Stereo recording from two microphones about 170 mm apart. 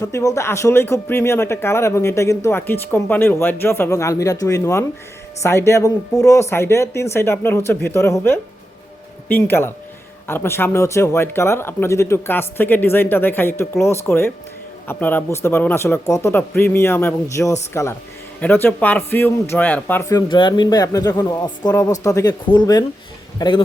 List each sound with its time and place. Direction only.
0.0 s speech: 20° left (ahead or behind)
20.2 s a man's voice: 30° left (ahead or behind)